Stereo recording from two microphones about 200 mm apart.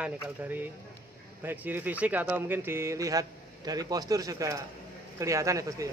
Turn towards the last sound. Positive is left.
turn(degrees=-15)  # may be behind; listen again after turning